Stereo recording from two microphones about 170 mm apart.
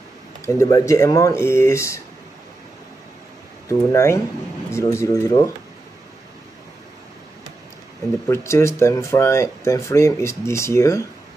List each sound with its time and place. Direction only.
0.6 s speech: 20° left (ahead or behind)
3.6 s speech: 15° left (ahead or behind)
8.3 s speech: 15° left (ahead or behind)